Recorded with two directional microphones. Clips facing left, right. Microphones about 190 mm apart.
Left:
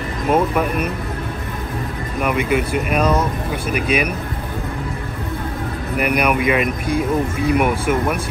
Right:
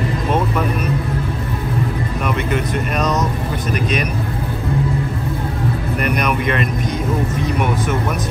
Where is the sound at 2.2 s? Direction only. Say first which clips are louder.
Left 3 dB; 10° left (ahead or behind).